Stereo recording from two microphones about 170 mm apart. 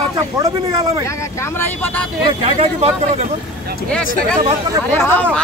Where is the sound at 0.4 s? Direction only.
20° right (ahead or behind).